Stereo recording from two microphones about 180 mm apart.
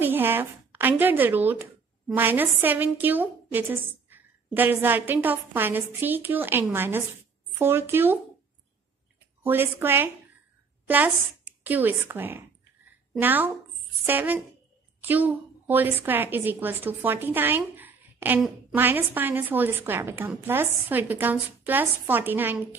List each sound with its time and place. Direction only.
0.0 s a woman's voice: 10° right (ahead or behind)
9.4 s a woman's voice: 10° right (ahead or behind)